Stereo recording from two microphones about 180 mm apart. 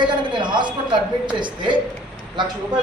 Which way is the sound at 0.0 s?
25° right (ahead or behind).